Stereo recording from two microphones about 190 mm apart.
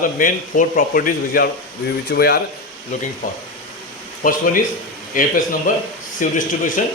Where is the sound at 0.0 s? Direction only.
45° left (ahead or behind).